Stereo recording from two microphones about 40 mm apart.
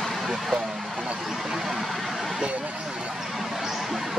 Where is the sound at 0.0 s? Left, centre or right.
Centre.